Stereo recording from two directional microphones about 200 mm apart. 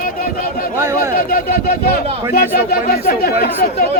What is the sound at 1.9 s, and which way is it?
Speech, 50° left (ahead or behind).